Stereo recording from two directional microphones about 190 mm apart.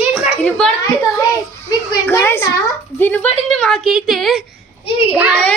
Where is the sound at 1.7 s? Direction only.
15° left (ahead or behind); by 5.4 s 10° right (ahead or behind).